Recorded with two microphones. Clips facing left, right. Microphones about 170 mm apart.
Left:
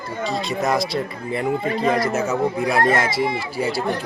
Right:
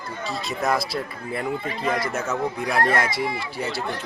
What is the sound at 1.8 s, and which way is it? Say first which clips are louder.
Speech: left 5 dB; 30° left (ahead or behind).